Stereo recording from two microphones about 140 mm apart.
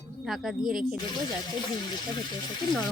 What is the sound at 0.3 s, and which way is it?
Speech, centre (ahead or behind).